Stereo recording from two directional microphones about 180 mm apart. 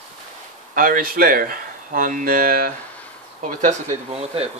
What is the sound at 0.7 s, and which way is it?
Speech, 50° right (ahead or behind).